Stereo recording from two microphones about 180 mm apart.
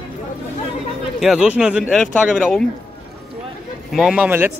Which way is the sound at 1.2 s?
5° right (ahead or behind).